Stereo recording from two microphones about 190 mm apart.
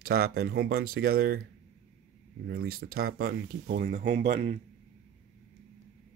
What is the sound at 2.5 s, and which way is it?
Speech, 55° right (ahead or behind).